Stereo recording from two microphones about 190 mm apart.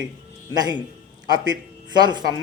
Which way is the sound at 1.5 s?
20° right (ahead or behind).